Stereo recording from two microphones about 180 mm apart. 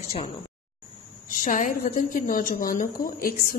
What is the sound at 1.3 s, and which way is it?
A woman's voice, 45° left (ahead or behind).